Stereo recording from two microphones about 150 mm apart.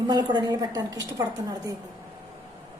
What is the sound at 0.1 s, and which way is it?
A woman's voice, 30° right (ahead or behind).